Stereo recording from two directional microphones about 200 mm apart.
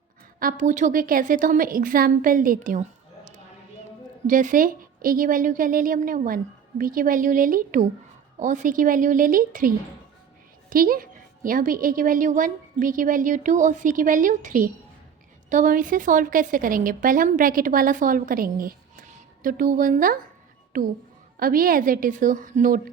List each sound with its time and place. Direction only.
0.3 s a woman's voice: 40° right (ahead or behind)
4.3 s a woman's voice: 40° right (ahead or behind)